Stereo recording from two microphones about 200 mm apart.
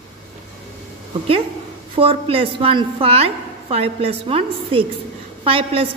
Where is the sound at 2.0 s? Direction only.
25° right (ahead or behind).